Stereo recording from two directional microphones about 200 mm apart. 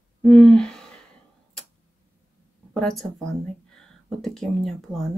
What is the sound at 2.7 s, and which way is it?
Speech, 5° left (ahead or behind).